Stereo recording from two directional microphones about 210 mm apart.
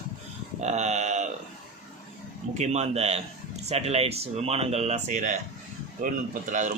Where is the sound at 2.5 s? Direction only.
35° right (ahead or behind).